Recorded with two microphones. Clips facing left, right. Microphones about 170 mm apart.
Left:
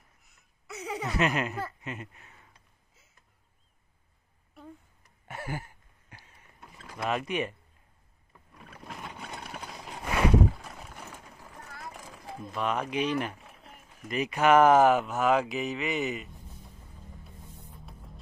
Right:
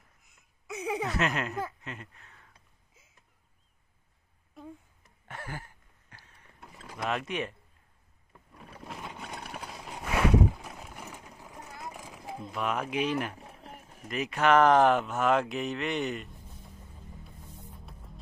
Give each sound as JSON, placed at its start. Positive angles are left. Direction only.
{"t": 0.7, "sound": "a sound", "side_deg": -15}
{"t": 1.0, "sound": "speech", "side_deg": 0}
{"t": 5.0, "sound": "a sound", "side_deg": 10}
{"t": 6.6, "sound": "rowboat", "side_deg": -10}
{"t": 7.0, "sound": "speech", "side_deg": 0}
{"t": 8.5, "sound": "boat", "side_deg": -5}
{"t": 10.8, "sound": "a sound", "side_deg": -5}
{"t": 11.1, "sound": "vehicle", "side_deg": -15}
{"t": 12.5, "sound": "speech", "side_deg": -5}
{"t": 13.4, "sound": "clip-clop", "side_deg": -35}
{"t": 14.0, "sound": "speech", "side_deg": 0}
{"t": 17.7, "sound": "music", "side_deg": 0}